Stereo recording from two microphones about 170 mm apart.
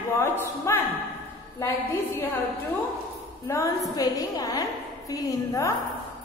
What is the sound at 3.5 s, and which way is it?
A woman's voice, 15° left (ahead or behind).